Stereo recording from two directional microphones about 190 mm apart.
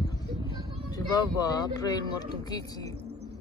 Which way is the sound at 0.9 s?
20° left (ahead or behind).